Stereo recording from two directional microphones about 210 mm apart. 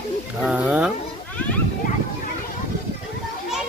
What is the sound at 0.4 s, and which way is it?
Speech, 5° right (ahead or behind).